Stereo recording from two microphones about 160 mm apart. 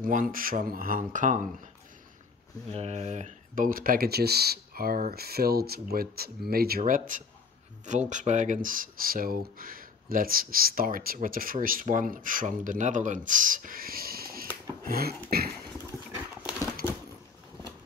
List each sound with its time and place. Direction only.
0.0 s speech: 55° right (ahead or behind)
2.7 s speech: 40° right (ahead or behind); by 6.8 s 75° right (ahead or behind)
6.8 s speech: 55° right (ahead or behind); by 15.5 s 70° right (ahead or behind)